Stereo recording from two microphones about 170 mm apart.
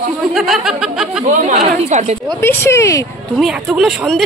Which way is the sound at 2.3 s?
15° left (ahead or behind).